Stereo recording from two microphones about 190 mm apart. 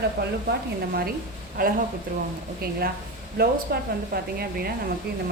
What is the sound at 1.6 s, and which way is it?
A woman's voice, 50° right (ahead or behind).